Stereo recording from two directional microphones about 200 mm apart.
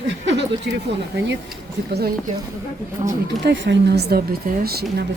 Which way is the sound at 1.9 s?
50° right (ahead or behind).